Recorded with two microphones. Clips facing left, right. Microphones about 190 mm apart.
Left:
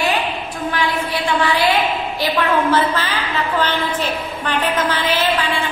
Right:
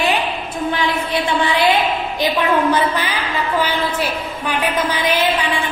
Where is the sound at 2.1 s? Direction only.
15° right (ahead or behind).